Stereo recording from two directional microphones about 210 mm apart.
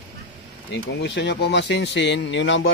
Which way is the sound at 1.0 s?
55° left (ahead or behind).